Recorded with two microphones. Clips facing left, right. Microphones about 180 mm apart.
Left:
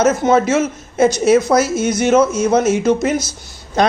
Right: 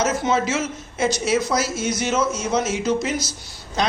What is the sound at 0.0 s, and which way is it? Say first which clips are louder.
Speech: left 7 dB; 50° left (ahead or behind).